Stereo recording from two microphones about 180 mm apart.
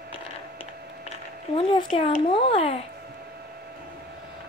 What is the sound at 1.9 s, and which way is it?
Speech, 30° left (ahead or behind).